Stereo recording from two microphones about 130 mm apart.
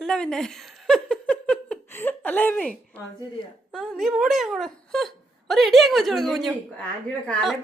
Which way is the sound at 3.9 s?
Centre (ahead or behind).